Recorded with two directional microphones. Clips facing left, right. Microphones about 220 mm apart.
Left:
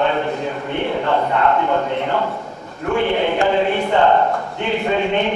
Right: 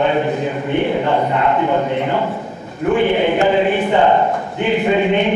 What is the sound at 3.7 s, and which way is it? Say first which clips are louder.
A man's voice: right 2 dB; 15° right (ahead or behind).